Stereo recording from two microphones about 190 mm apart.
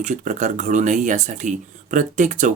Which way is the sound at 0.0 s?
40° right (ahead or behind).